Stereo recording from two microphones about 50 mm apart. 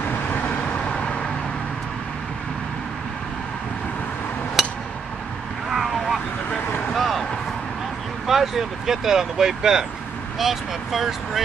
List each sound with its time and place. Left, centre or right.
0.1 s vehicle: left
0.6 s vehicle: left
4.6 s a sound: centre
5.7 s vehicle: centre
8.3 s speech: centre